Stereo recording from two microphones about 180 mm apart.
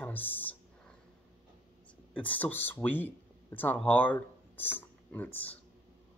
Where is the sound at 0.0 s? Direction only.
10° left (ahead or behind).